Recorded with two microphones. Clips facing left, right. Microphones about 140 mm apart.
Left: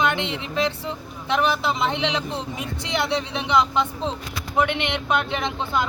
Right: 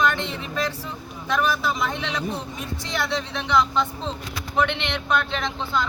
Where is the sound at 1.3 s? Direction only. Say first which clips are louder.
Left 2 dB; 25° left (ahead or behind).